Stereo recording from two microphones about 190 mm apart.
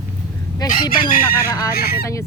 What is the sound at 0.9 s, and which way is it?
Speech, 50° left (ahead or behind).